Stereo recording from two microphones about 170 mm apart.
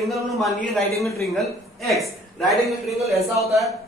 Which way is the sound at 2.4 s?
Centre (ahead or behind).